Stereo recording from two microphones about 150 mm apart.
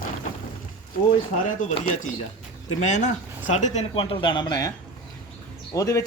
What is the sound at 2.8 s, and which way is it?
Speech, 50° left (ahead or behind).